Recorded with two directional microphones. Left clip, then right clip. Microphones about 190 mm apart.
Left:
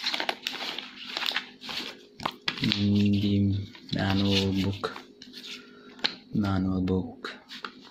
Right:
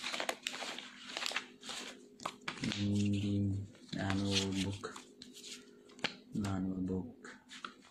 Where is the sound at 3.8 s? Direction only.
10° right (ahead or behind).